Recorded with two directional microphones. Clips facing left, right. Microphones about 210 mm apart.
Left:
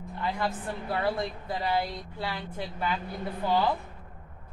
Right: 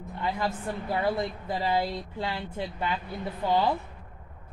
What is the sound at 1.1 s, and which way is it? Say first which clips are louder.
Speech: right 2 dB; 25° right (ahead or behind).